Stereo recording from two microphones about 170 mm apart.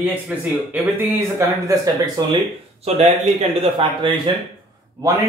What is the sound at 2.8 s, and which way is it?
Speech, 40° right (ahead or behind).